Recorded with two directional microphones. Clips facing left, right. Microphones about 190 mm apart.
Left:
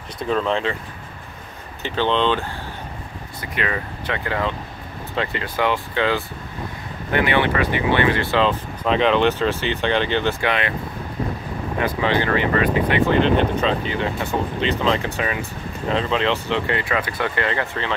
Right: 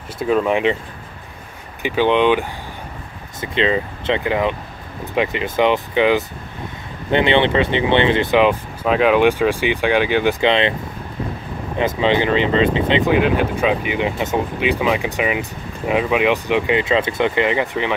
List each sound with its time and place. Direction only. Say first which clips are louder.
0.2 s speech: right 5 dB; 10° right (ahead or behind)
1.8 s speech: right 5 dB; 10° right (ahead or behind)
10.4 s speech: right 6 dB; 25° right (ahead or behind)
12.0 s speech: right 4 dB; 20° right (ahead or behind)
13.1 s speech: right 1 dB; 10° right (ahead or behind)